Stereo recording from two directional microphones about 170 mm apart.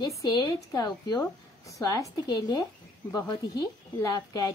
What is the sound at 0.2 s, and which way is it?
A woman's voice, 20° left (ahead or behind).